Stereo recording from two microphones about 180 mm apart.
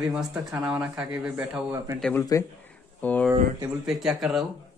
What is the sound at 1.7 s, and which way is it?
Speech, 15° right (ahead or behind).